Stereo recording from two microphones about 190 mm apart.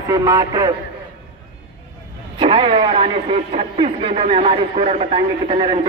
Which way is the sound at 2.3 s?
30° right (ahead or behind).